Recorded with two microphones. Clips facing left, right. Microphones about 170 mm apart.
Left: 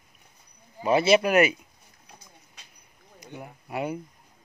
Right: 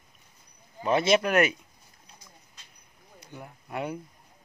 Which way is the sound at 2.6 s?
65° left (ahead or behind).